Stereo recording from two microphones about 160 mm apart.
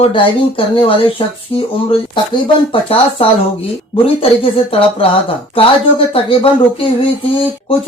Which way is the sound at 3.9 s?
35° left (ahead or behind).